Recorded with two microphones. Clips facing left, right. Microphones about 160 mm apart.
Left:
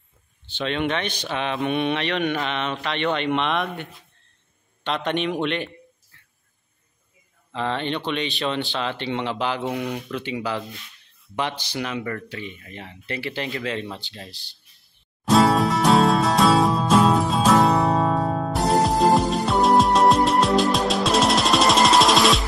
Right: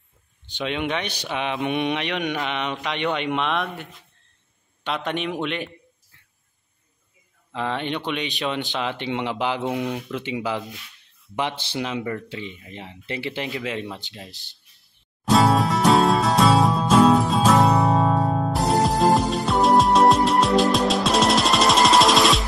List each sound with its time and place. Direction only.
0.5 s speech: 10° right (ahead or behind)
6.1 s a sound: 15° right (ahead or behind)
7.5 s speech: 10° right (ahead or behind)
15.2 s music: centre (ahead or behind)